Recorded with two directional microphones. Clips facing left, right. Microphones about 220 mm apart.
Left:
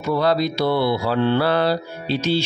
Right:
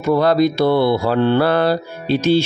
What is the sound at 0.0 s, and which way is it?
Mantra, 50° right (ahead or behind).